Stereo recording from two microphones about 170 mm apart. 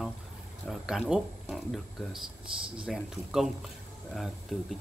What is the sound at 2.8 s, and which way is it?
Speech, centre (ahead or behind).